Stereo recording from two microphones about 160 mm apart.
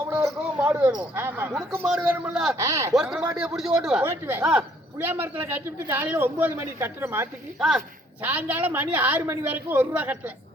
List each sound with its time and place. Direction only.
0.3 s a sound: 10° right (ahead or behind)
1.1 s a woman's voice: 15° right (ahead or behind)
2.6 s speech: 20° right (ahead or behind)
2.9 s a man's voice: 5° right (ahead or behind)
3.2 s a woman's voice: 15° right (ahead or behind)
3.5 s a man's voice: 5° right (ahead or behind)